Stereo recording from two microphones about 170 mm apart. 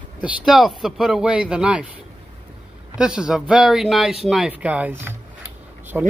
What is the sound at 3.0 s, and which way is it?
Speech, 5° right (ahead or behind).